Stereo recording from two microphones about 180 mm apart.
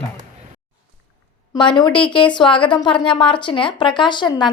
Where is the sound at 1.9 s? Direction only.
5° left (ahead or behind).